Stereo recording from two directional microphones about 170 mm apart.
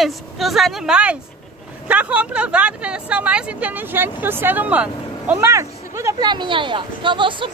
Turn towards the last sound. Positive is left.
turn(degrees=-30)  # may be behind; listen again after turning